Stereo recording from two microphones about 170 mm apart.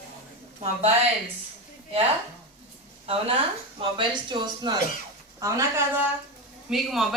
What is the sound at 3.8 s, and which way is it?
Speech, 25° right (ahead or behind).